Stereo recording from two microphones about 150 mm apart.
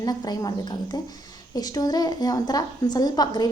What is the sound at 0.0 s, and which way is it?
A woman's voice, 25° left (ahead or behind).